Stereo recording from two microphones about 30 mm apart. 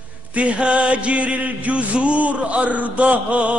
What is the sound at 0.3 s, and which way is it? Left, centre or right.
Music, right.